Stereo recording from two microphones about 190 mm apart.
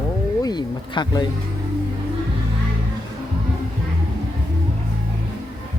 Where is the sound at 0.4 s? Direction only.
20° left (ahead or behind).